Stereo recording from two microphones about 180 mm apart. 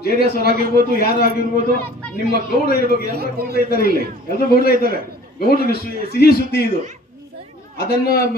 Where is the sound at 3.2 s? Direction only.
60° right (ahead or behind).